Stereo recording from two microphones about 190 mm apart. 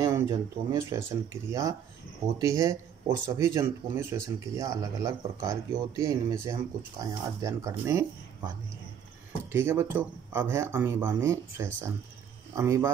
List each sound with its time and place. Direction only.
0.0 s speech: 15° right (ahead or behind)
9.5 s speech: 15° right (ahead or behind)